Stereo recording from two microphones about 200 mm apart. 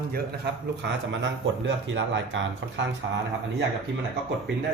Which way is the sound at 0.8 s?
65° right (ahead or behind).